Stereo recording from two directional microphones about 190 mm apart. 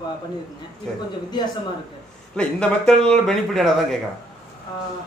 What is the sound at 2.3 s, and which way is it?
Speech, 5° left (ahead or behind).